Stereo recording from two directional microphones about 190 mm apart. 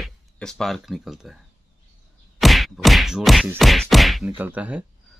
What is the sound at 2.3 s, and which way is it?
Whack, centre (ahead or behind).